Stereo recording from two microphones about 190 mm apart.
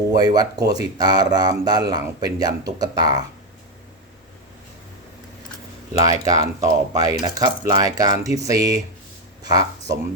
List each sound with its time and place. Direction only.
0.1 s speech: 20° right (ahead or behind)
5.9 s speech: 20° right (ahead or behind)